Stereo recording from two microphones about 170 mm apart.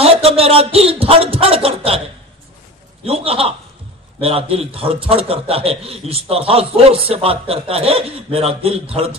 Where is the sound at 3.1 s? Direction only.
35° right (ahead or behind).